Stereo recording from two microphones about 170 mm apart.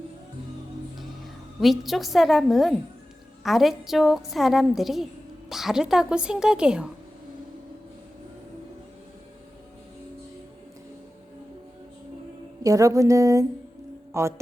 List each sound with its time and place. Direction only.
1.6 s a woman's voice: centre (ahead or behind)
12.6 s a sound: 20° right (ahead or behind)
14.1 s music: 15° right (ahead or behind)